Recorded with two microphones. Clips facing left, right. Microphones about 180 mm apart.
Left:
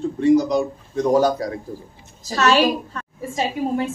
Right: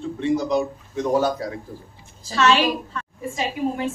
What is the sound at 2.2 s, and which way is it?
Speech, 40° left (ahead or behind).